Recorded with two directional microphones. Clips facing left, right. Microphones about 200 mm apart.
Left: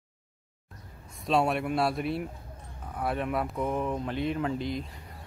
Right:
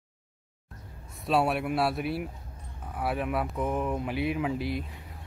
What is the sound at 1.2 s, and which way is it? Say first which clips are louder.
Speech: even; 5° right (ahead or behind).